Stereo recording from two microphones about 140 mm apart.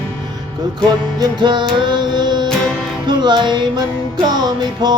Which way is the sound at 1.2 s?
30° right (ahead or behind).